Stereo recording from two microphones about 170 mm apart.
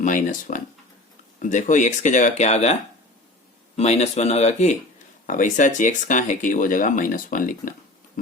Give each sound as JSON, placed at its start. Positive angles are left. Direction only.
{"t": 0.0, "sound": "speech", "side_deg": 50}
{"t": 3.8, "sound": "speech", "side_deg": 40}